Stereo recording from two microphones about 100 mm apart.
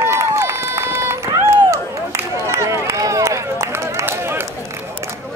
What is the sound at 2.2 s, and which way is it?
Run, 25° right (ahead or behind).